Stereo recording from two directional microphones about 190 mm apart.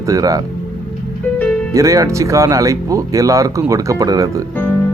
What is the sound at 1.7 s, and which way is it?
Speech, 15° right (ahead or behind).